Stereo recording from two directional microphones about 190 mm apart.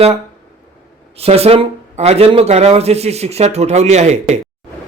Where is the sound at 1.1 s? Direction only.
30° right (ahead or behind).